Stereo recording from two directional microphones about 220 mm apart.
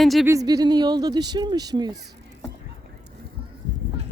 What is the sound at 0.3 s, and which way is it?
Speech, 15° right (ahead or behind).